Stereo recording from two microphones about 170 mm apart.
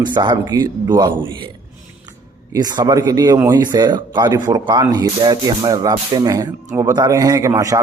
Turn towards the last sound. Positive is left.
turn(degrees=-20)  # may be behind; listen again after turning